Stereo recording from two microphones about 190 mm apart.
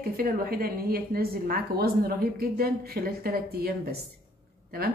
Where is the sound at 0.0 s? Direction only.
50° right (ahead or behind).